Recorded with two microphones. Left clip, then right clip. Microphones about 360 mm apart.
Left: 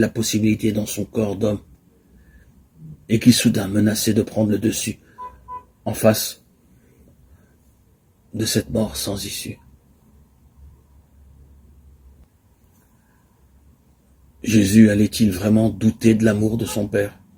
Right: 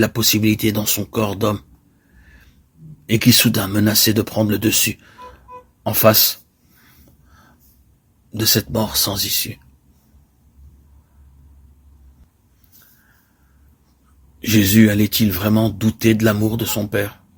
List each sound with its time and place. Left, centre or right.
0.0 s speech: right
3.1 s speech: right
8.4 s speech: right
14.4 s speech: right